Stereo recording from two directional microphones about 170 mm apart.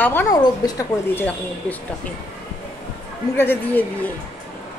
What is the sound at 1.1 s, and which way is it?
Speech, 10° left (ahead or behind).